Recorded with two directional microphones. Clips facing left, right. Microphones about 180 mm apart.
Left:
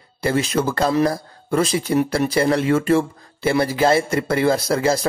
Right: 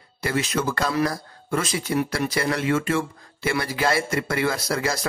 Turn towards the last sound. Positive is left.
turn(degrees=30)  # may be behind; listen again after turning